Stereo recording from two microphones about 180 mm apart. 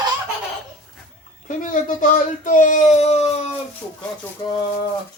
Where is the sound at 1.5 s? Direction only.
45° left (ahead or behind).